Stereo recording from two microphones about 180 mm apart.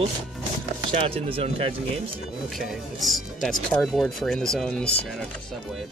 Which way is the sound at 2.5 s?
Centre (ahead or behind).